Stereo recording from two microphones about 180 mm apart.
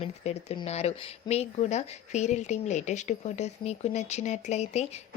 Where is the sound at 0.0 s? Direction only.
35° left (ahead or behind).